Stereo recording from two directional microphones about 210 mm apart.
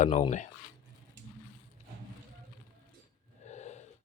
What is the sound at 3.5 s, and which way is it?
Gasp, 30° left (ahead or behind).